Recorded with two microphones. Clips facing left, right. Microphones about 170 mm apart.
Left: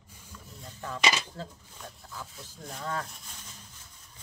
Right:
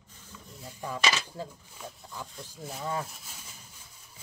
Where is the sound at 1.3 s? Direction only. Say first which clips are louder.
Right 2 dB; 10° right (ahead or behind).